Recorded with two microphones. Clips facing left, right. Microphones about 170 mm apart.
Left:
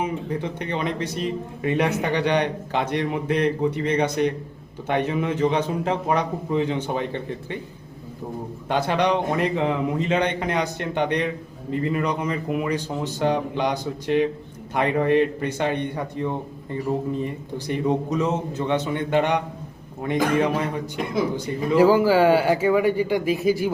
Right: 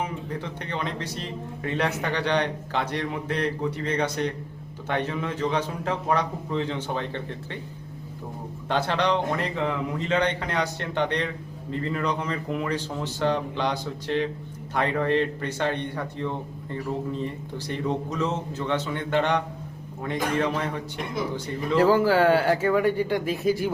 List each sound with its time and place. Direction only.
0.0 s a man's voice: 20° left (ahead or behind)
8.7 s a man's voice: 15° left (ahead or behind)